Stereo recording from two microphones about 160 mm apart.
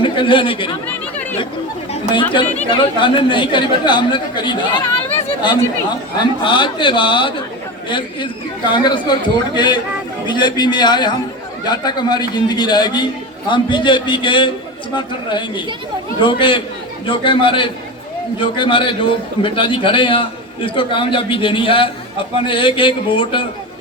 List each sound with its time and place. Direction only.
0.0 s speech: 30° left (ahead or behind)
1.9 s a man's voice: 30° left (ahead or behind)